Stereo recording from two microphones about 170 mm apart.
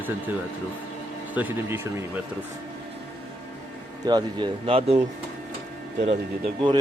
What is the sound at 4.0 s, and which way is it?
Speech, 25° right (ahead or behind).